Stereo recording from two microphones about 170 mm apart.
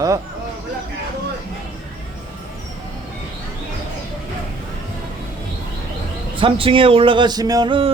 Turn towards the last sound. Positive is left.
turn(degrees=-25)  # may be behind; listen again after turning